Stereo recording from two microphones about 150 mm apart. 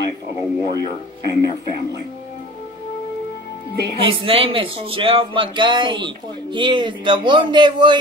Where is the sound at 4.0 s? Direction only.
35° right (ahead or behind).